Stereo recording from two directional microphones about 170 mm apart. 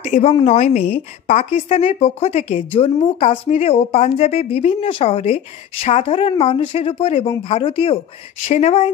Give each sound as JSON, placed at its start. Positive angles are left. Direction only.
{"t": 0.1, "sound": "a woman's voice", "side_deg": 40}